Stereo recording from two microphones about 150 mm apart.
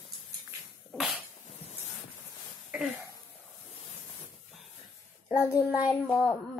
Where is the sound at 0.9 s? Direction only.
5° right (ahead or behind).